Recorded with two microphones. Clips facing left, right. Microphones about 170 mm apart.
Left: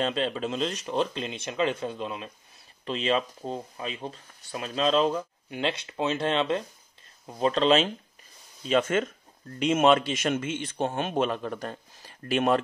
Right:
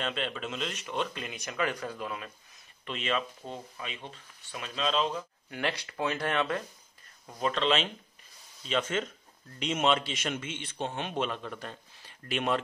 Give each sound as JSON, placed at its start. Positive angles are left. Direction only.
{"t": 0.0, "sound": "speech", "side_deg": 35}
{"t": 2.8, "sound": "speech", "side_deg": 35}
{"t": 5.5, "sound": "speech", "side_deg": 20}
{"t": 7.2, "sound": "speech", "side_deg": 35}